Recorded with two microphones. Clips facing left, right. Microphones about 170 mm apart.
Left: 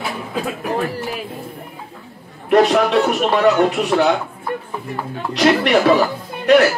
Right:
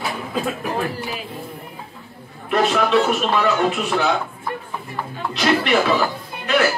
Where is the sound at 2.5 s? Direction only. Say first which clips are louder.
Left 4 dB; 60° left (ahead or behind).